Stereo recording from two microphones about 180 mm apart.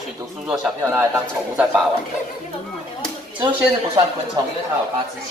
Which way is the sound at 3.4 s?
25° right (ahead or behind).